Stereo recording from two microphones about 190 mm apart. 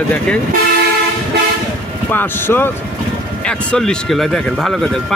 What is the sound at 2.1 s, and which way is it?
Speech, 10° left (ahead or behind).